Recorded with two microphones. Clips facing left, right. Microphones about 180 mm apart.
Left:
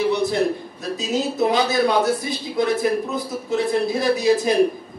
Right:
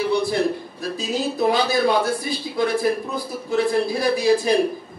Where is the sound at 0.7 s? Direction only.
20° left (ahead or behind).